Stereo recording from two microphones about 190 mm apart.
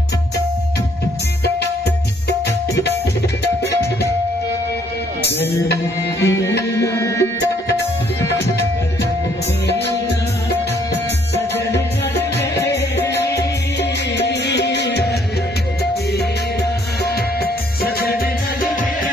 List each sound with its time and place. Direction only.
2.2 s music: 60° left (ahead or behind)
5.5 s music: 60° left (ahead or behind)
6.2 s music: 15° left (ahead or behind)
9.7 s music: 60° left (ahead or behind)
13.3 s music: 60° left (ahead or behind)